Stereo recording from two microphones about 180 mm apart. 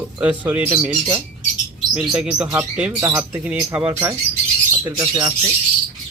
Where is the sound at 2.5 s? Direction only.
5° right (ahead or behind).